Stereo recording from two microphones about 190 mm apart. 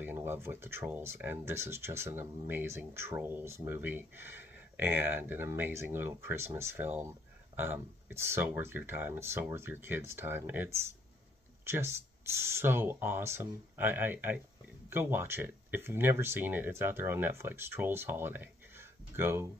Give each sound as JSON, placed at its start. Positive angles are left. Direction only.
{"t": 0.0, "sound": "speech", "side_deg": -10}